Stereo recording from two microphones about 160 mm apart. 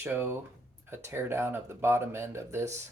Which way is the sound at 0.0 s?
15° right (ahead or behind).